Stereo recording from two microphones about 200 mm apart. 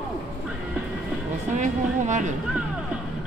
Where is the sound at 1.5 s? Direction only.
35° right (ahead or behind).